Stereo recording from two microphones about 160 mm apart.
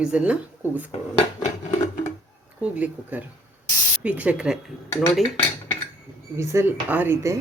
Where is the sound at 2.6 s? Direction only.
10° right (ahead or behind).